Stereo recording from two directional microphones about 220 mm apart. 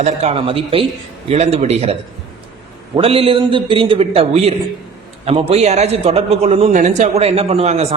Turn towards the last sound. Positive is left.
turn(degrees=-30)  # may be behind; listen again after turning